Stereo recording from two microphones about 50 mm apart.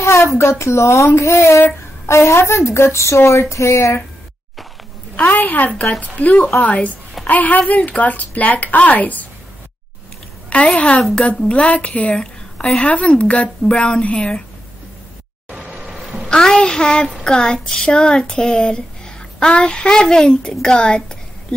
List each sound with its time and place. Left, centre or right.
0.0 s a woman's voice: left
2.0 s a woman's voice: left
5.1 s a woman's voice: left
10.8 s a woman's voice: left
15.5 s vehicle: centre
16.3 s speech: centre